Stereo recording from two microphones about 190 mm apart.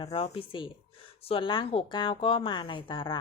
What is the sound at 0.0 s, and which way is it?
A woman's voice, 30° left (ahead or behind).